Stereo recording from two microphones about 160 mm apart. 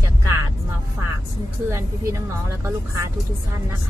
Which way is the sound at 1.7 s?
20° right (ahead or behind).